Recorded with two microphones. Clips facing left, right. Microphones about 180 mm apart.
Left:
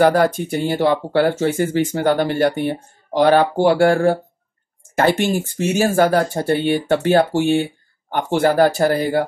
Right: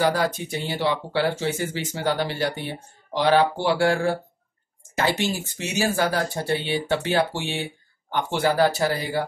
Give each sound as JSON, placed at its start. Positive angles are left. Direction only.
{"t": 0.0, "sound": "speech", "side_deg": 55}